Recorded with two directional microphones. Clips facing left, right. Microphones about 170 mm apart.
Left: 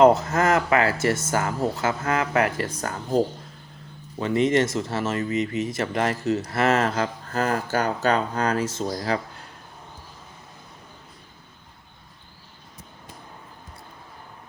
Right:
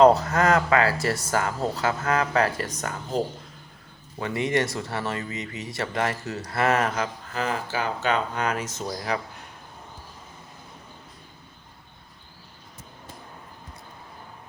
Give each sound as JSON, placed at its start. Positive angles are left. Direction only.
{"t": 0.0, "sound": "speech", "side_deg": 20}
{"t": 4.2, "sound": "speech", "side_deg": 20}